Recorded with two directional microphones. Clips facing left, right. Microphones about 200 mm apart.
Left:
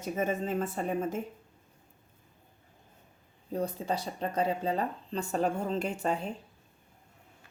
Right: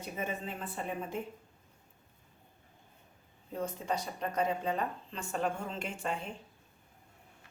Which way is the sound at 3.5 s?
35° left (ahead or behind).